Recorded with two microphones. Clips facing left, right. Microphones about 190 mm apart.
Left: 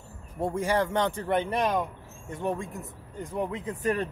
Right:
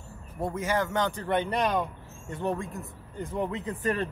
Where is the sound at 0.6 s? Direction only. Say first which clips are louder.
Left 2 dB; 30° left (ahead or behind).